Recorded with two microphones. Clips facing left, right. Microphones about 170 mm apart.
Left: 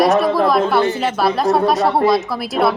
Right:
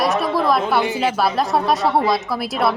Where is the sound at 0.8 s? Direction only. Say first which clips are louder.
Left 2 dB; 15° right (ahead or behind).